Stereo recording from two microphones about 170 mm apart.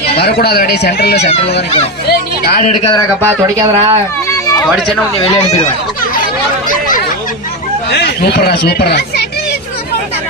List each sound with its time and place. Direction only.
0.2 s speech: 75° left (ahead or behind)
2.6 s speech: 45° left (ahead or behind)
3.2 s speech: 15° right (ahead or behind)
5.2 s speech: 40° left (ahead or behind)
7.9 s speech: 70° left (ahead or behind)